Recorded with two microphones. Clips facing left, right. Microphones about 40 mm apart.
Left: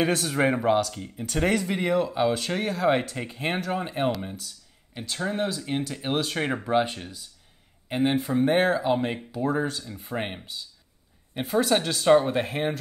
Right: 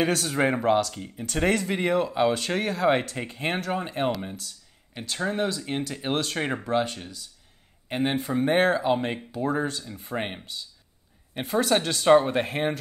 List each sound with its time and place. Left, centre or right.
0.0 s speech: centre
6.7 s speech: left
7.9 s speech: centre